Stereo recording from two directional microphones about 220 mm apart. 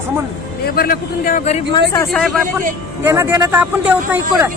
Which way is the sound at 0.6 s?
45° left (ahead or behind).